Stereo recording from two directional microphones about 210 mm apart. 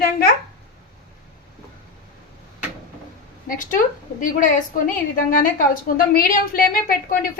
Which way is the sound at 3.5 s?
40° left (ahead or behind).